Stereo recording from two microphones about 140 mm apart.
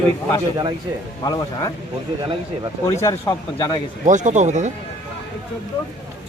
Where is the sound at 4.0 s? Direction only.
60° right (ahead or behind).